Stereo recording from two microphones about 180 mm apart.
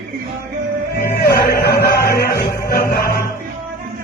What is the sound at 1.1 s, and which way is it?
Music, 60° left (ahead or behind).